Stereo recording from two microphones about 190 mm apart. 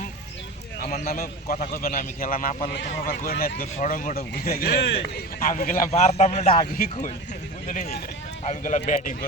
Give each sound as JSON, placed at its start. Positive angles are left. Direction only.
{"t": 0.9, "sound": "speech", "side_deg": 50}
{"t": 5.4, "sound": "a man's voice", "side_deg": 45}